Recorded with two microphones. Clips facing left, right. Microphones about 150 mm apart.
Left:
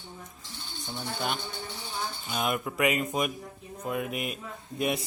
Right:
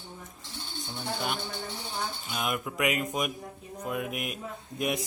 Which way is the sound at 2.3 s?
Centre (ahead or behind).